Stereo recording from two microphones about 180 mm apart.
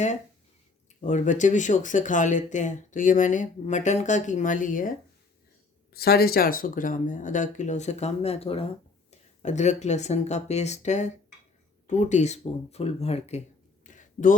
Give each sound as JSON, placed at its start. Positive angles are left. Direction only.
{"t": 1.0, "sound": "speech", "side_deg": 45}
{"t": 5.9, "sound": "speech", "side_deg": 60}
{"t": 13.8, "sound": "a sound", "side_deg": 45}